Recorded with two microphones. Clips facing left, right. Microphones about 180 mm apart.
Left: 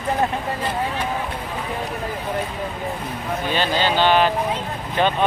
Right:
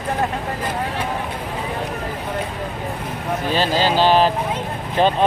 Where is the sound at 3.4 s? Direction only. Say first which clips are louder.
Right 2 dB; 35° right (ahead or behind).